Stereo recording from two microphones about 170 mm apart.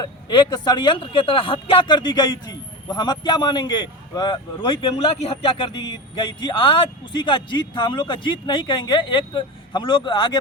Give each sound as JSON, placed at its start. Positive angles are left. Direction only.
{"t": 0.0, "sound": "speech", "side_deg": 25}